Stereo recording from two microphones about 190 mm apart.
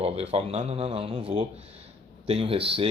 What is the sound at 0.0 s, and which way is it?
Speech, 30° right (ahead or behind).